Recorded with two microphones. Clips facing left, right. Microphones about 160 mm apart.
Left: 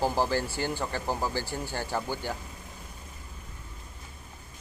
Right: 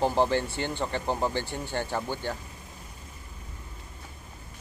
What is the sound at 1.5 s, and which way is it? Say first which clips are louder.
Speech: right 1 dB; 5° left (ahead or behind).